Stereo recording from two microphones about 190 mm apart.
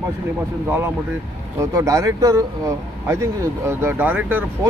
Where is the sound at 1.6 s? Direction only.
15° right (ahead or behind).